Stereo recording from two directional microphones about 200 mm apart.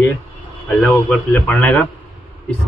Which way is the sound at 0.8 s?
5° left (ahead or behind).